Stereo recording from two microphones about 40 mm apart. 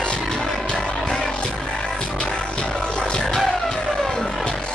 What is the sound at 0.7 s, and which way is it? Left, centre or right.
Music, centre.